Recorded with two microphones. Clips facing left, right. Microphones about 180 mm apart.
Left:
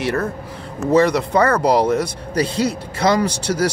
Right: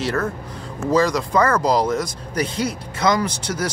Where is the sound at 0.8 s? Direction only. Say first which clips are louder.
Left 3 dB; 25° left (ahead or behind).